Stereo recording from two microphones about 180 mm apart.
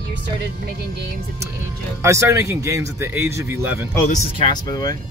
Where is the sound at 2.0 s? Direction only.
15° right (ahead or behind).